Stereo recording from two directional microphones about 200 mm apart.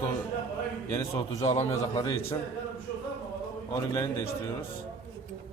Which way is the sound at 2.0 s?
15° left (ahead or behind).